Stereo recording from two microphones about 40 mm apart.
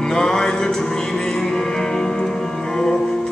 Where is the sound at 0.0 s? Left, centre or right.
Centre.